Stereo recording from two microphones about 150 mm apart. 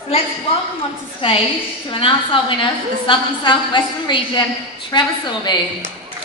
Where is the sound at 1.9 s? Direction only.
35° left (ahead or behind).